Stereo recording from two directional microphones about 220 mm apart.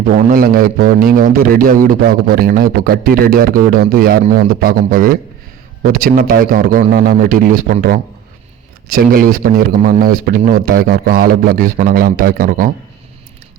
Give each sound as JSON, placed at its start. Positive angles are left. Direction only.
{"t": 0.3, "sound": "a man's voice", "side_deg": -40}